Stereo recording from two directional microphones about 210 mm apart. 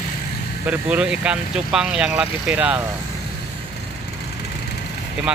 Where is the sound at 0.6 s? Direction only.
5° right (ahead or behind).